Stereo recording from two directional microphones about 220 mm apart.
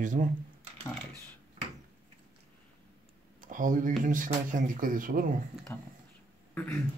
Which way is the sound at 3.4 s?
35° right (ahead or behind).